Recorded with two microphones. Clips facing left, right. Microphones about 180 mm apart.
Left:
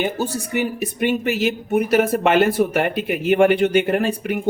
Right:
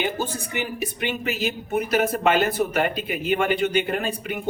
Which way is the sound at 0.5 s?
50° left (ahead or behind).